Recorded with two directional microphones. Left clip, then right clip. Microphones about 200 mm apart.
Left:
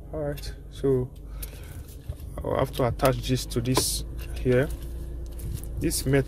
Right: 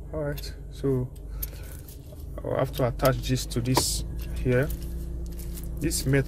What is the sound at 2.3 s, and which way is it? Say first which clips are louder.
Speech: left 1 dB; 20° left (ahead or behind).